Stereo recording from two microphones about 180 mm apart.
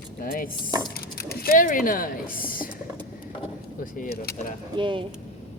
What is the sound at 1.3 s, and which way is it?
Speech, 50° left (ahead or behind).